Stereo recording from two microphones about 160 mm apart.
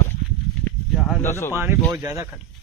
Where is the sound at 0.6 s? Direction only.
10° left (ahead or behind).